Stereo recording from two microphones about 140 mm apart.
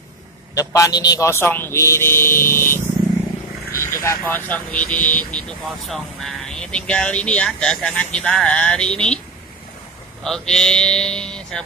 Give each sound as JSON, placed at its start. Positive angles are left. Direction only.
{"t": 0.6, "sound": "speech", "side_deg": 25}
{"t": 3.8, "sound": "speech", "side_deg": 20}
{"t": 10.2, "sound": "a man's voice", "side_deg": 5}